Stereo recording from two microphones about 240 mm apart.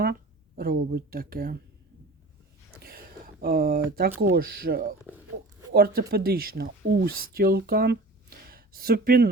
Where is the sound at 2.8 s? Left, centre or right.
Right.